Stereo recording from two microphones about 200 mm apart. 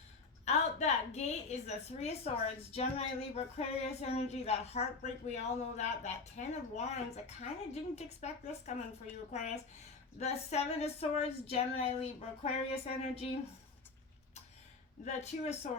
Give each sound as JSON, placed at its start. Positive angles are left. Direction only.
{"t": 0.4, "sound": "a woman's voice", "side_deg": 35}
{"t": 15.0, "sound": "a woman's voice", "side_deg": 35}